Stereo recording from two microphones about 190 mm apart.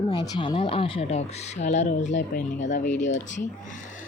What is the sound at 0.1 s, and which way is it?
Speech, 25° left (ahead or behind).